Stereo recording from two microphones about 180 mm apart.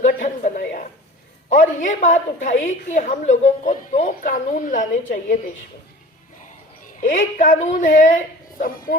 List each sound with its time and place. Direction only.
0.0 s a sound: 45° left (ahead or behind)
1.5 s a woman's voice: 45° left (ahead or behind)
6.8 s a woman's voice: 45° left (ahead or behind)